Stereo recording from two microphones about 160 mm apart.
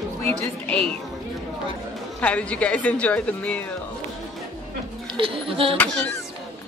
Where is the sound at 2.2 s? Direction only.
10° left (ahead or behind).